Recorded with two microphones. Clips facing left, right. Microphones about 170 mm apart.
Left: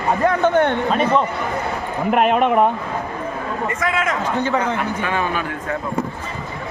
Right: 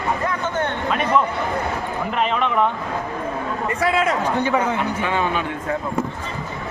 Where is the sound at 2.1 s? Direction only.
55° left (ahead or behind).